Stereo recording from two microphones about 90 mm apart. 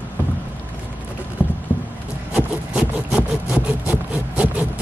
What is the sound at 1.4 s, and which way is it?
Rowboat, 25° left (ahead or behind).